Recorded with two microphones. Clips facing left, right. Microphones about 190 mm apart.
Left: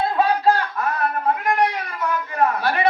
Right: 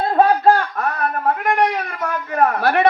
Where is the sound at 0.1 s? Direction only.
50° right (ahead or behind).